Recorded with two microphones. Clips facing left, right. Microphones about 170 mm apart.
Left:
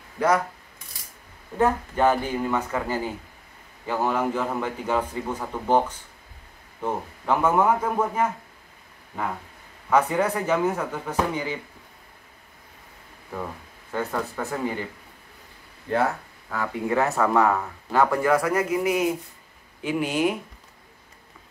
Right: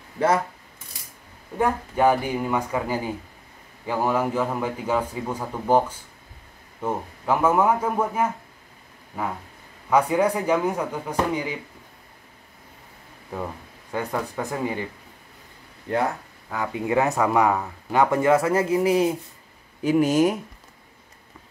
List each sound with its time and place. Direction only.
1.6 s speech: 10° right (ahead or behind)
9.8 s speech: 10° right (ahead or behind)
13.9 s speech: 15° right (ahead or behind)
15.9 s speech: 15° right (ahead or behind)
19.8 s speech: 40° right (ahead or behind)